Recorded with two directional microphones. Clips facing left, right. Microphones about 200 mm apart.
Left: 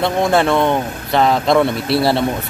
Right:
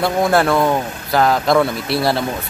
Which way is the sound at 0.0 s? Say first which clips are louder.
Even; centre (ahead or behind).